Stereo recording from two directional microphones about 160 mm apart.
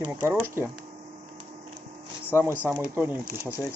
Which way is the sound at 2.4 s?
15° right (ahead or behind).